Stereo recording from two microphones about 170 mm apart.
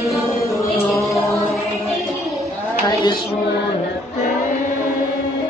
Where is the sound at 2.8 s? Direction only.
20° left (ahead or behind).